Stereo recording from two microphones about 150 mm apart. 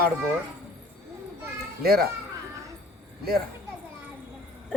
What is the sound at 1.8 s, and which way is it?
Speech, 90° right.